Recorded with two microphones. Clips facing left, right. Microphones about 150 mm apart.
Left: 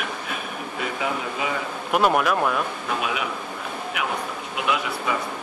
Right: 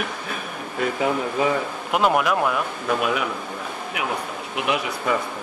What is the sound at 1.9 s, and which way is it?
Speech, 15° right (ahead or behind).